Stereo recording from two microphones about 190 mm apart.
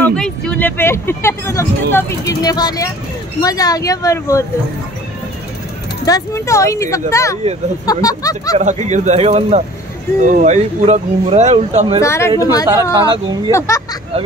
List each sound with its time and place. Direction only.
0.1 s speech: 5° left (ahead or behind)
6.0 s speech: 15° left (ahead or behind)
8.5 s speech: 40° right (ahead or behind)
12.0 s speech: 15° left (ahead or behind)
12.9 s speech: 25° right (ahead or behind)
13.5 s speech: 15° left (ahead or behind)